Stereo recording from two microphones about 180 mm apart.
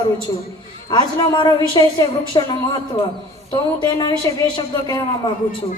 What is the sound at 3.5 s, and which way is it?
Speech, 25° left (ahead or behind).